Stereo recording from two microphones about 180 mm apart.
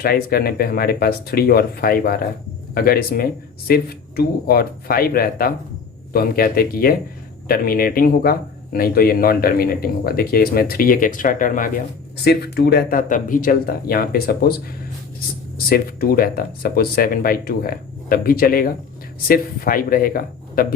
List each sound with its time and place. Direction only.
0.0 s speech: 55° left (ahead or behind)
12.2 s speech: 65° left (ahead or behind)
15.5 s speech: 55° left (ahead or behind)